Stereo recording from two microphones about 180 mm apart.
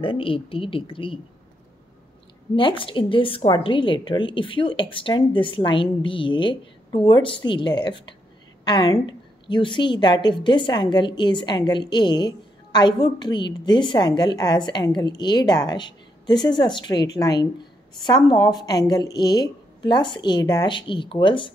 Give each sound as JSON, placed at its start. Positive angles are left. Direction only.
{"t": 0.0, "sound": "a woman's voice", "side_deg": 30}
{"t": 2.5, "sound": "a woman's voice", "side_deg": 30}